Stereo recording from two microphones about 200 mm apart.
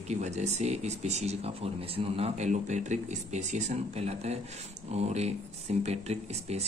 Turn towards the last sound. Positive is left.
turn(degrees=-30)  # may be behind; listen again after turning